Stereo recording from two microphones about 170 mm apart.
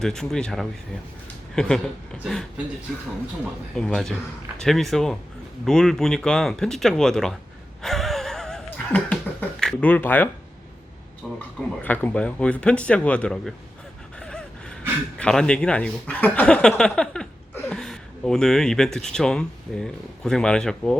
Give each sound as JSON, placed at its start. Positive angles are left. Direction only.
{"t": 0.0, "sound": "speech", "side_deg": 5}
{"t": 3.8, "sound": "speech", "side_deg": 5}
{"t": 7.8, "sound": "a sound", "side_deg": 0}
{"t": 11.3, "sound": "speech", "side_deg": 10}
{"t": 14.2, "sound": "gasp", "side_deg": 5}
{"t": 15.2, "sound": "speech", "side_deg": 5}